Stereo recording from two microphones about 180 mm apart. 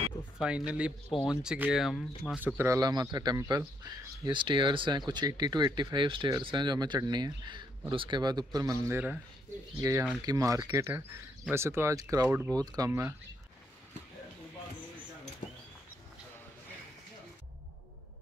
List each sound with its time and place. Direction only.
0.4 s speech: 5° right (ahead or behind); by 8.5 s 25° right (ahead or behind)
8.8 s speech: 10° right (ahead or behind)